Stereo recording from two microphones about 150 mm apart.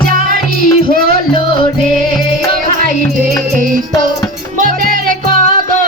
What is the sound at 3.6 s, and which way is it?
Music, 65° right (ahead or behind).